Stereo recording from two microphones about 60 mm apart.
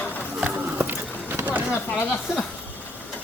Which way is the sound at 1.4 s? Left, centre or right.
Right.